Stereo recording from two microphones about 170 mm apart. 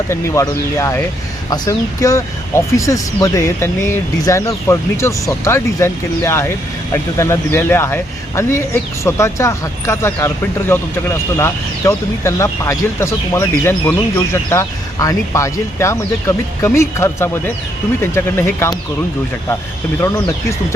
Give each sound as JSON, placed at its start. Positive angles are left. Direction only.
{"t": 0.1, "sound": "speech", "side_deg": 15}
{"t": 20.0, "sound": "speech", "side_deg": 15}